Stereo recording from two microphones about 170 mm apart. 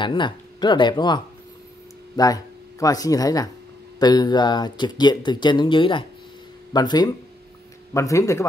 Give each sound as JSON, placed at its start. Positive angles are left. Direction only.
{"t": 0.0, "sound": "speech", "side_deg": 30}